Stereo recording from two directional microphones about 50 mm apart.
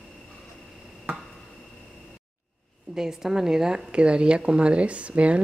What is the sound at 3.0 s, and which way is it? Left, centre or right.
A woman's voice, centre.